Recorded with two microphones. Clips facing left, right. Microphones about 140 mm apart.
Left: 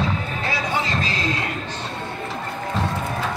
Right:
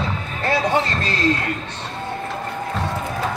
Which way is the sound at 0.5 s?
60° right (ahead or behind).